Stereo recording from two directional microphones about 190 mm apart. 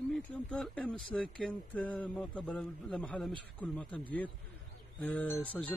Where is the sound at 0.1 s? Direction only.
5° left (ahead or behind).